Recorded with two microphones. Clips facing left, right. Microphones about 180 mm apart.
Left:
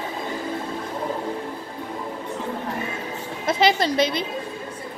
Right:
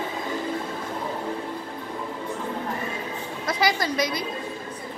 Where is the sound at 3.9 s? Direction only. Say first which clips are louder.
Left 4 dB; 25° left (ahead or behind).